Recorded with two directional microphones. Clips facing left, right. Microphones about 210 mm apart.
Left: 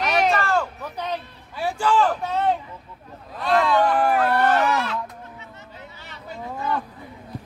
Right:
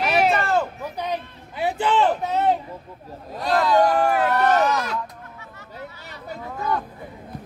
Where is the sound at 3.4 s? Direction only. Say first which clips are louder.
Right 1 dB; 40° right (ahead or behind).